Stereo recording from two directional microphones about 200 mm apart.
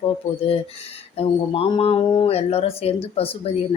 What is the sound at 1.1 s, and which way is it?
Speech, 30° left (ahead or behind).